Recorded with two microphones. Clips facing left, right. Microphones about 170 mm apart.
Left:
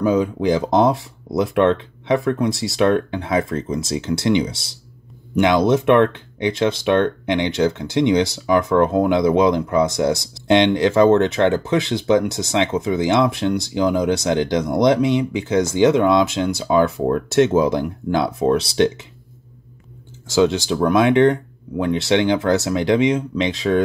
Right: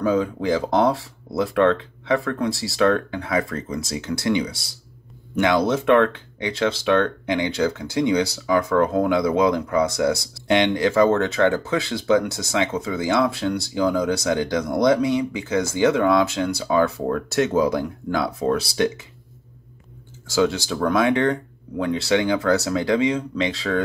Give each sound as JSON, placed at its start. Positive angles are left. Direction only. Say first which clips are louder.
{"t": 0.0, "sound": "speech", "louder": "left 3 dB", "side_deg": 20}
{"t": 20.2, "sound": "speech", "louder": "left 4 dB", "side_deg": 20}